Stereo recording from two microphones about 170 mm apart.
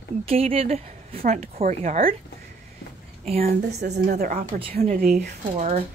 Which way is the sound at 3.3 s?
65° right (ahead or behind).